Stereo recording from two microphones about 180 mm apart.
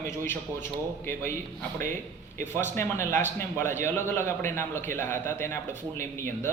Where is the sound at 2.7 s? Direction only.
15° left (ahead or behind).